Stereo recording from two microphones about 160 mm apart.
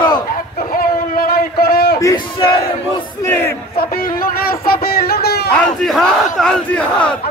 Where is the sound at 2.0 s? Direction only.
20° left (ahead or behind).